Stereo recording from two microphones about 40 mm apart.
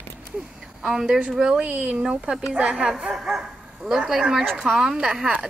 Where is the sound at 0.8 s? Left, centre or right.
Centre.